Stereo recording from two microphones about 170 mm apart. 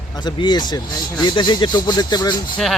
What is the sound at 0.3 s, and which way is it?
Speech, 25° left (ahead or behind).